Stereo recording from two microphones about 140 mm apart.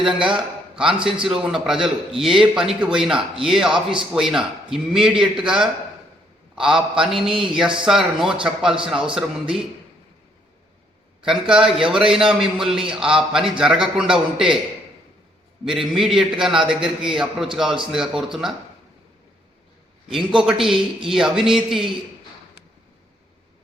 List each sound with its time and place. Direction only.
0.0 s a man's voice: 5° right (ahead or behind)
11.2 s a man's voice: 5° right (ahead or behind)
15.6 s a man's voice: 5° right (ahead or behind)
20.3 s a man's voice: 5° right (ahead or behind)